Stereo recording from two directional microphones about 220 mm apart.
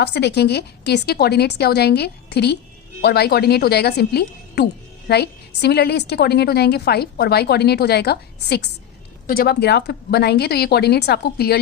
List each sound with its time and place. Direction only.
0.0 s a woman's voice: 50° left (ahead or behind)